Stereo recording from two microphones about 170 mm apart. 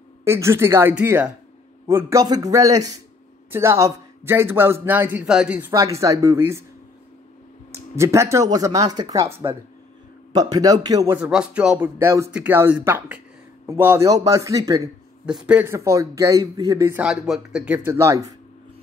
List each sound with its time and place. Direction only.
0.2 s a man's voice: 15° right (ahead or behind)
5.7 s a man's voice: 20° right (ahead or behind)
7.7 s speech: 15° right (ahead or behind)
11.1 s a man's voice: 5° right (ahead or behind)
15.2 s a man's voice: 5° right (ahead or behind)
17.0 s a man's voice: 5° right (ahead or behind)